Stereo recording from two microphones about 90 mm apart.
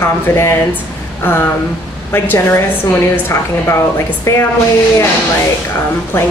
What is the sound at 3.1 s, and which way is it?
A woman's voice, 30° left (ahead or behind).